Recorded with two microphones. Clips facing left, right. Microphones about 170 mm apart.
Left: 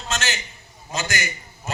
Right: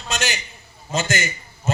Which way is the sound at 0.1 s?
15° right (ahead or behind).